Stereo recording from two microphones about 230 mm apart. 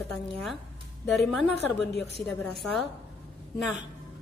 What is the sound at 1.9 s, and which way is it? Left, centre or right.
Speech, left.